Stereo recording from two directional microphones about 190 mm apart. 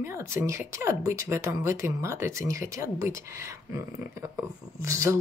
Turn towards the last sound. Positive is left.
turn(degrees=-15)  # may be behind; listen again after turning